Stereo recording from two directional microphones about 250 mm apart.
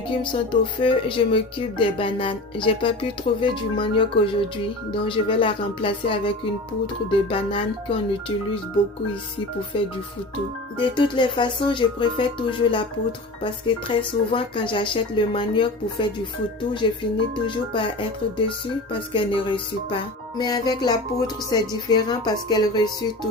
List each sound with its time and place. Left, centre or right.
0.2 s speech: centre
10.8 s speech: centre